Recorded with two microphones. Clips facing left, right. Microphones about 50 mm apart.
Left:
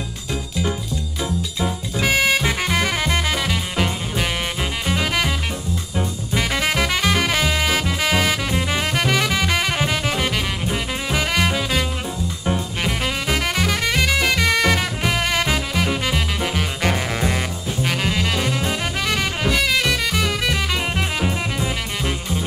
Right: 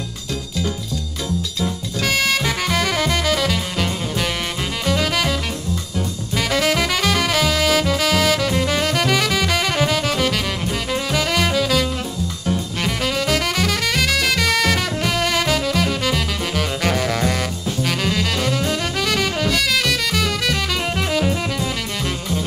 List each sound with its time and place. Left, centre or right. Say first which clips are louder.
1.2 s music: even; left
12.4 s saxophone: even; left